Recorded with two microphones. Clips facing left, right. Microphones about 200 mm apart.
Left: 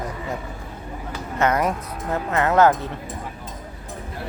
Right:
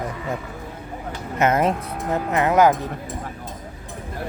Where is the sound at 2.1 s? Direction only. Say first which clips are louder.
Right 1 dB; 15° right (ahead or behind).